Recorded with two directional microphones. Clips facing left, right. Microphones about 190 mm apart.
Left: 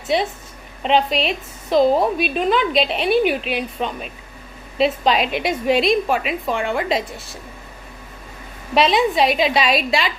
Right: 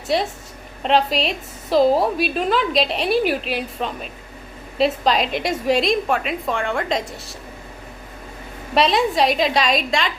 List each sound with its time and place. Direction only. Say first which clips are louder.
0.1 s a woman's voice: left 1 dB; centre (ahead or behind)
8.7 s a woman's voice: left 1 dB; centre (ahead or behind)